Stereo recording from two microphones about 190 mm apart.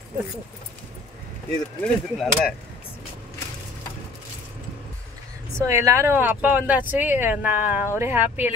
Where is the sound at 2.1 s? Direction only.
Centre (ahead or behind).